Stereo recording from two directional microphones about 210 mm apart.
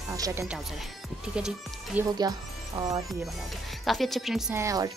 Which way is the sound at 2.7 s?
25° right (ahead or behind).